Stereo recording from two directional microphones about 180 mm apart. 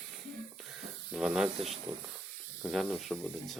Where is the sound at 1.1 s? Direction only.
Centre (ahead or behind).